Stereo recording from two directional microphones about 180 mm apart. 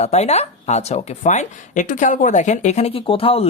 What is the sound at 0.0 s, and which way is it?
Speech, 35° left (ahead or behind).